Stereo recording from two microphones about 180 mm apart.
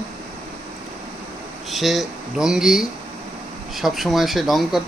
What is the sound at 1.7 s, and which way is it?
Speech, centre (ahead or behind).